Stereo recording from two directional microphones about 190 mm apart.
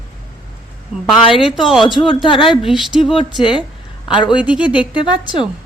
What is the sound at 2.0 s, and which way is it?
Speech, 25° left (ahead or behind).